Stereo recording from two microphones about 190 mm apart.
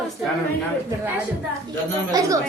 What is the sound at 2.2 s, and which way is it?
Speech, 20° right (ahead or behind).